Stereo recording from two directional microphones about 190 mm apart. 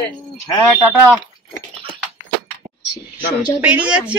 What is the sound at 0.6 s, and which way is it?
Speech, 10° left (ahead or behind).